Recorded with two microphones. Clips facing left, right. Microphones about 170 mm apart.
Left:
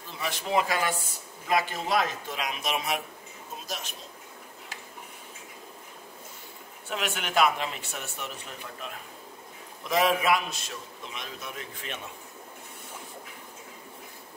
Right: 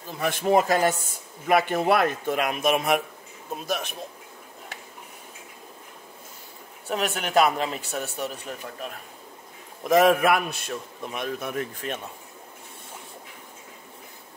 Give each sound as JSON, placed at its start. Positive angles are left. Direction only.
{"t": 0.1, "sound": "speech", "side_deg": -50}
{"t": 1.5, "sound": "a man's voice", "side_deg": -60}
{"t": 6.9, "sound": "speech", "side_deg": -40}
{"t": 9.8, "sound": "a man's voice", "side_deg": -50}